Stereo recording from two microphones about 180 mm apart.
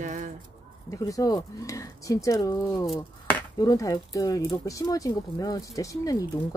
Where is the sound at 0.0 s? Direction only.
45° right (ahead or behind).